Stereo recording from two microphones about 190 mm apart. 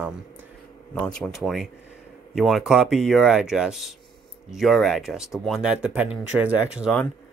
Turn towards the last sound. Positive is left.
turn(degrees=-5)  # may be behind; listen again after turning